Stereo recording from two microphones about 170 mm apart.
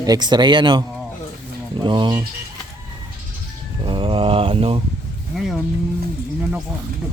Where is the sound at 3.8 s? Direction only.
30° right (ahead or behind).